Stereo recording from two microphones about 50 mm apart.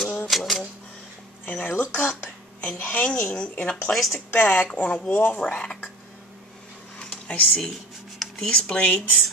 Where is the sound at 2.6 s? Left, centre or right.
Left.